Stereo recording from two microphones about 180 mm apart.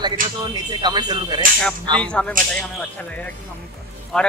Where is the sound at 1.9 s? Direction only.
5° left (ahead or behind).